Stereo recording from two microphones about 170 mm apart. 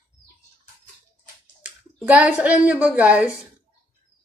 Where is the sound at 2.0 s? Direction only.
10° right (ahead or behind).